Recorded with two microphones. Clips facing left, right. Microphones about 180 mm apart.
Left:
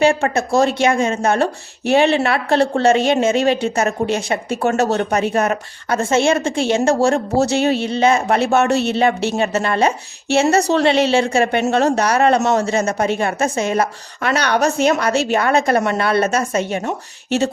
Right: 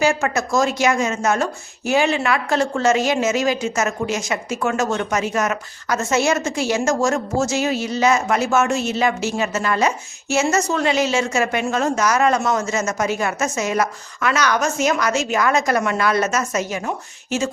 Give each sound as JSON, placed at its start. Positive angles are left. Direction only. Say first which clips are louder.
{"t": 0.0, "sound": "speech", "louder": "left 4 dB", "side_deg": 30}